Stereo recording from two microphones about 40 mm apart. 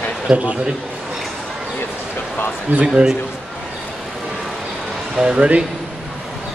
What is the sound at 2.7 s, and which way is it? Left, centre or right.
Speech, right.